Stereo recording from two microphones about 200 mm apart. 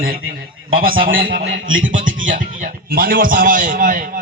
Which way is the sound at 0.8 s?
45° right (ahead or behind).